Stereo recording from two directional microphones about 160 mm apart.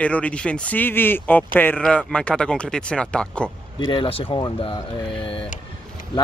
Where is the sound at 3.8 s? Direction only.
30° left (ahead or behind).